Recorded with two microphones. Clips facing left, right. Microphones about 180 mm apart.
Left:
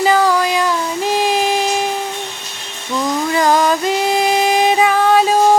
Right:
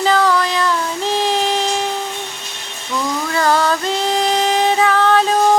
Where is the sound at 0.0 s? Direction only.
10° left (ahead or behind).